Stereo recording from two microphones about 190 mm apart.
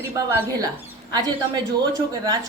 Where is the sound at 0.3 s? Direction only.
10° right (ahead or behind).